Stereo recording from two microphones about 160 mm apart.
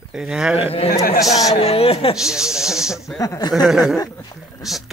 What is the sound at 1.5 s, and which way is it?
Speech, 40° left (ahead or behind).